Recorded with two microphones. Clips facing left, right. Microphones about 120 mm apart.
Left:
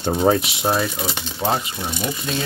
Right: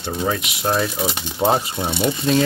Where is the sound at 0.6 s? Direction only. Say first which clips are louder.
Right 5 dB; centre (ahead or behind).